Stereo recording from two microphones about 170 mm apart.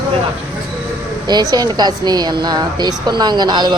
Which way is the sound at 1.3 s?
25° right (ahead or behind).